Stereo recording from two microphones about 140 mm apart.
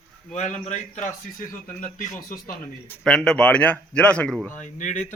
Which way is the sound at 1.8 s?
80° left.